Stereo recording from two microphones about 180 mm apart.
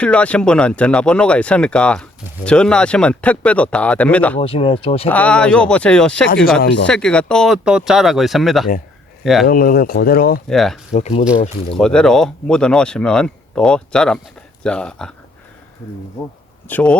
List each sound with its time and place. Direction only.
0.0 s speech: 5° left (ahead or behind)
4.4 s speech: 30° left (ahead or behind)
5.0 s speech: 10° left (ahead or behind)
6.6 s speech: 80° left
6.8 s speech: 5° left (ahead or behind)
9.5 s speech: 50° left (ahead or behind)
10.5 s speech: centre (ahead or behind)
10.9 s speech: 35° left (ahead or behind)
11.8 s speech: 5° left (ahead or behind)
16.6 s speech: 10° left (ahead or behind)